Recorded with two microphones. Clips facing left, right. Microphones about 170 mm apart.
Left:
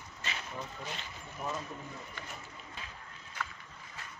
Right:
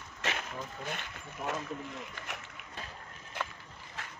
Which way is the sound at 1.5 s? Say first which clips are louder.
Right 3 dB; 80° right.